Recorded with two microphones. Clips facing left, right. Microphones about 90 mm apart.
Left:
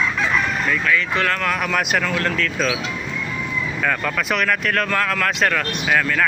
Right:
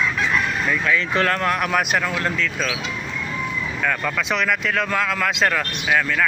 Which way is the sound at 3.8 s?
Centre (ahead or behind).